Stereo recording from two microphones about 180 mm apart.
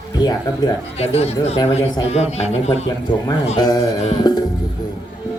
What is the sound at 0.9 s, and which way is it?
A man's voice, 35° left (ahead or behind).